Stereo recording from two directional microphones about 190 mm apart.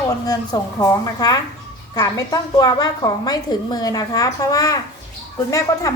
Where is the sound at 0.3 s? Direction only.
20° left (ahead or behind).